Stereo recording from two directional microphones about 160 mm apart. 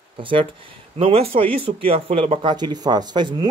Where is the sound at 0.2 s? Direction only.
30° right (ahead or behind).